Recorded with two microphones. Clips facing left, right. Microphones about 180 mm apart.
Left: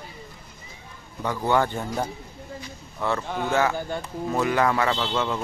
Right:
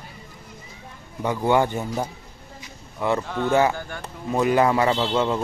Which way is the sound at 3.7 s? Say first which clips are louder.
Left 5 dB; 20° left (ahead or behind).